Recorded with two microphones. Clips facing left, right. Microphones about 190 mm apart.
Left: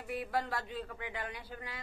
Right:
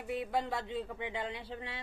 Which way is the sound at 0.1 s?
20° right (ahead or behind).